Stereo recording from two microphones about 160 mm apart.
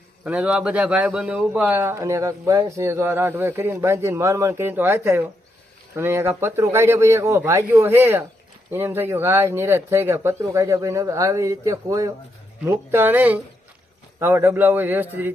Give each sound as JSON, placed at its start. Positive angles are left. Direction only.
{"t": 0.3, "sound": "a man's voice", "side_deg": -5}